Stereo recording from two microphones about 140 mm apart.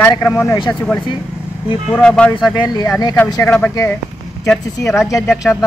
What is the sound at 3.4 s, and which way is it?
Speech, 15° left (ahead or behind).